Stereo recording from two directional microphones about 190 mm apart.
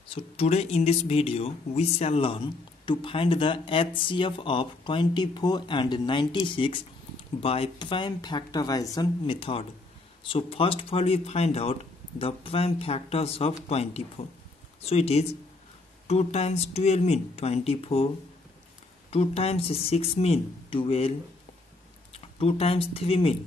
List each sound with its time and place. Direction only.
0.1 s speech: 30° left (ahead or behind)
22.1 s speech: 30° left (ahead or behind)